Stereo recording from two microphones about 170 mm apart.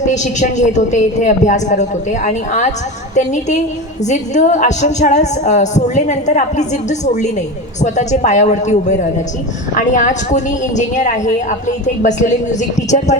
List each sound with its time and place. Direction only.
0.0 s a woman's voice: 45° left (ahead or behind)